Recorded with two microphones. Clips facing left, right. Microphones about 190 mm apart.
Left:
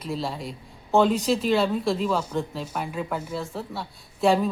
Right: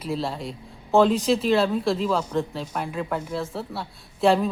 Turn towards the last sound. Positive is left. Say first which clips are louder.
# right 1 dB
turn(degrees=0)  # may be behind; listen again after turning